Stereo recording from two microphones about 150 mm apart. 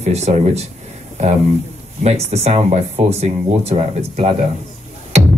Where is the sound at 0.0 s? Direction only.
45° right (ahead or behind).